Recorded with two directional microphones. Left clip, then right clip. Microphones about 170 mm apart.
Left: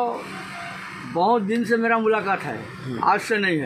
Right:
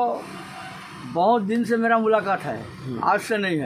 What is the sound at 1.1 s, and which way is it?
Speech, 10° right (ahead or behind).